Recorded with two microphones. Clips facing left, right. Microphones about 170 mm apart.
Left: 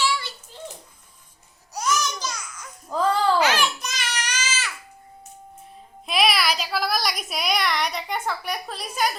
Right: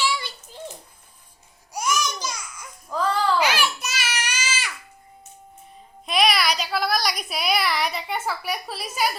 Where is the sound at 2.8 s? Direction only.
25° left (ahead or behind).